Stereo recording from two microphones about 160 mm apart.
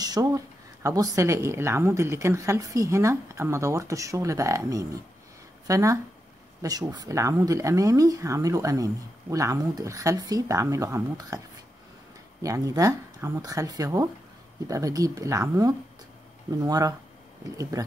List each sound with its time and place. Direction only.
0.0 s a sound: 20° right (ahead or behind)
0.8 s speech: 20° right (ahead or behind)
12.4 s speech: 20° right (ahead or behind)